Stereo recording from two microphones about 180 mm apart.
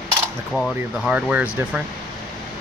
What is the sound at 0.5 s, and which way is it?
Speech, centre (ahead or behind).